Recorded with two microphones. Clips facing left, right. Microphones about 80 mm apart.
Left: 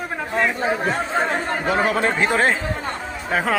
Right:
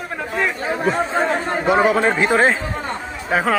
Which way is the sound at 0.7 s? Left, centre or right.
Centre.